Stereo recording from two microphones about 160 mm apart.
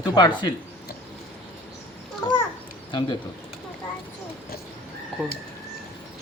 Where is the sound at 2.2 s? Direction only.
30° left (ahead or behind).